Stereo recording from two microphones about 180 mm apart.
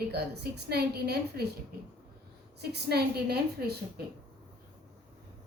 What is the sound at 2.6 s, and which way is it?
A woman's voice, 65° right (ahead or behind).